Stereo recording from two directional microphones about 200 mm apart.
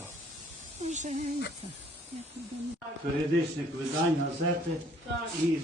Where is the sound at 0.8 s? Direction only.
35° right (ahead or behind).